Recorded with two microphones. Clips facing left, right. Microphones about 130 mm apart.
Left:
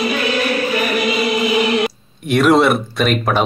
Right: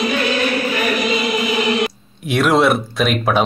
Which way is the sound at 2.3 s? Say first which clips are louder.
Left 2 dB; centre (ahead or behind).